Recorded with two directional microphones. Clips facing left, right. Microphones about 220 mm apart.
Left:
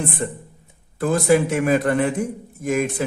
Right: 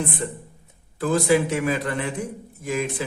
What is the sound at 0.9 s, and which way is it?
Speech, 50° left (ahead or behind).